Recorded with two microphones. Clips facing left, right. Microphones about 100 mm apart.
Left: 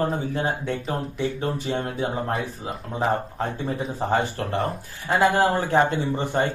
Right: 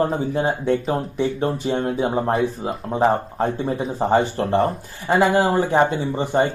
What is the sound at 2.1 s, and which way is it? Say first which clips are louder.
Speech: right 7 dB; 40° right (ahead or behind).